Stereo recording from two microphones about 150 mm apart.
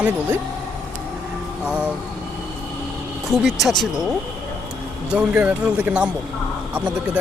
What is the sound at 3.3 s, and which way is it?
Speech, centre (ahead or behind).